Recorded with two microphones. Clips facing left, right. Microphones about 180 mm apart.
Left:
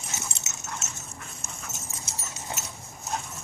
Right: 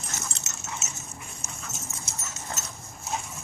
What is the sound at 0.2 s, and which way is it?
Dog, 5° right (ahead or behind).